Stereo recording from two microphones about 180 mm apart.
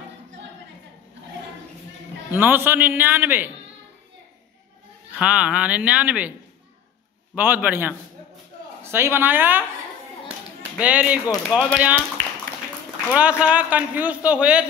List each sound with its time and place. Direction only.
2.3 s a man's voice: 10° right (ahead or behind)
5.1 s a man's voice: 5° right (ahead or behind)
7.3 s a man's voice: 10° right (ahead or behind)
10.8 s a man's voice: 10° right (ahead or behind)
12.2 s a sound: 90° right
13.1 s a man's voice: 5° right (ahead or behind)